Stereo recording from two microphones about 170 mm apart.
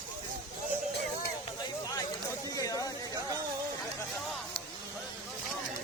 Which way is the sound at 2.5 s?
20° left (ahead or behind).